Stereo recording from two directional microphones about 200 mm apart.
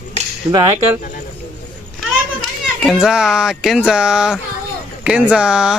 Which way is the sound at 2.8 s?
Centre (ahead or behind).